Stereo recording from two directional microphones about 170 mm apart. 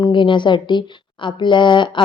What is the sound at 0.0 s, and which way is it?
A woman's voice, 30° left (ahead or behind).